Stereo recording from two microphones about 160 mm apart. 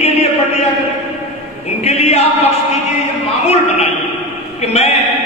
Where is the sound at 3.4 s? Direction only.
45° left (ahead or behind).